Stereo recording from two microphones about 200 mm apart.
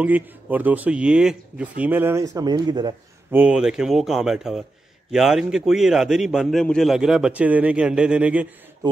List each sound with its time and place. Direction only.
0.0 s speech: 10° right (ahead or behind)
3.3 s speech: 5° right (ahead or behind)